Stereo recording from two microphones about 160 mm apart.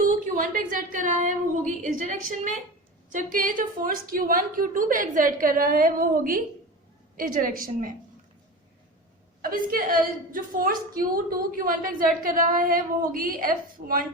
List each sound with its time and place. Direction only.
0.0 s a woman's voice: 55° right (ahead or behind)
9.4 s a woman's voice: 60° right (ahead or behind)